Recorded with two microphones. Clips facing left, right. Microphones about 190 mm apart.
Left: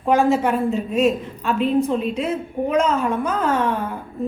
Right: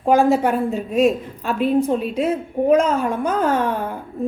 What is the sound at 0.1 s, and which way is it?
Speech, 35° right (ahead or behind).